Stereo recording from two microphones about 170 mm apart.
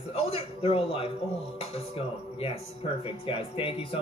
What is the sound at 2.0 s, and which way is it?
Speech, 35° left (ahead or behind).